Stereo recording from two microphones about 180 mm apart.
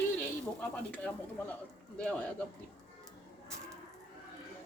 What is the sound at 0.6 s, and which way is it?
A man's voice, 10° left (ahead or behind).